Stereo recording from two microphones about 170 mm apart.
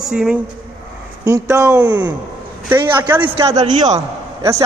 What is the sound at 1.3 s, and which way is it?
A man's voice, 15° right (ahead or behind).